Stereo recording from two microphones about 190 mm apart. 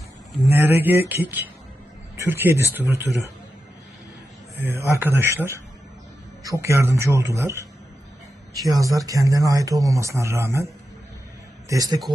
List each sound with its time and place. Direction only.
0.5 s speech: 10° right (ahead or behind)
4.6 s speech: 10° right (ahead or behind)
8.6 s speech: 20° right (ahead or behind)
11.7 s speech: 20° right (ahead or behind)